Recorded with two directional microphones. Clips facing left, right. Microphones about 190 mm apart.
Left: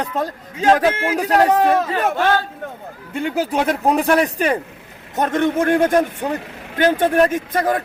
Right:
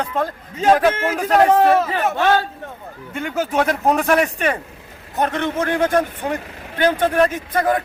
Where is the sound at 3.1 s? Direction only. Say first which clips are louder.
Left 2 dB; 35° left (ahead or behind).